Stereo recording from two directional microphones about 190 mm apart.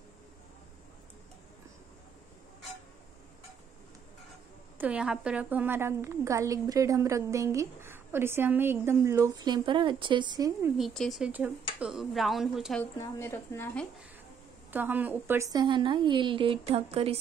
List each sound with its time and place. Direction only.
4.7 s a woman's voice: 5° right (ahead or behind)
10.8 s speech: centre (ahead or behind)
13.0 s a woman's voice: 15° left (ahead or behind)
14.7 s a woman's voice: 10° right (ahead or behind); by 17.2 s 30° right (ahead or behind)